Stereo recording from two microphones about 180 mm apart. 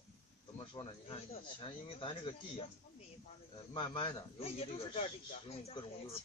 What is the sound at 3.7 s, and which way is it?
Speech, 30° left (ahead or behind).